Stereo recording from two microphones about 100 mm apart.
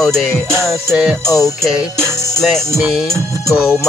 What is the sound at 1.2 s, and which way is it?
Music, 35° left (ahead or behind).